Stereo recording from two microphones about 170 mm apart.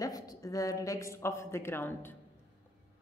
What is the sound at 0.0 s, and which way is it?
A woman's voice, 20° left (ahead or behind).